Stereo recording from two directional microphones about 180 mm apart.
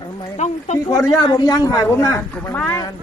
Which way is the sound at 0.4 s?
40° left (ahead or behind).